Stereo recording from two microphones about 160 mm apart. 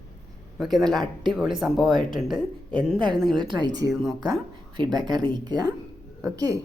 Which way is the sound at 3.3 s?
30° right (ahead or behind).